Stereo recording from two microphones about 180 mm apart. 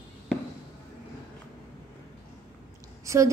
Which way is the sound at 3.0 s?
15° right (ahead or behind).